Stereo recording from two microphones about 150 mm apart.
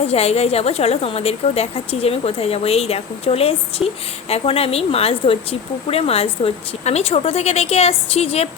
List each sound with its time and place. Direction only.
0.1 s a woman's voice: 45° left (ahead or behind)